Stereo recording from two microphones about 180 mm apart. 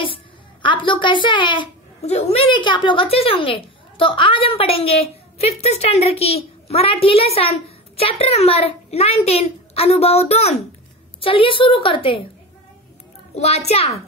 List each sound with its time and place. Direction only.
0.0 s a woman's voice: 25° left (ahead or behind)
13.3 s a child's voice: 35° left (ahead or behind)